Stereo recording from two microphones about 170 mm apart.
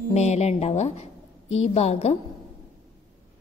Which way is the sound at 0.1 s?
40° left (ahead or behind).